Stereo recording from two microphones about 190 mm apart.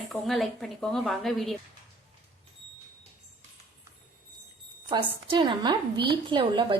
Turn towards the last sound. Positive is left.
turn(degrees=-25)  # may be behind; listen again after turning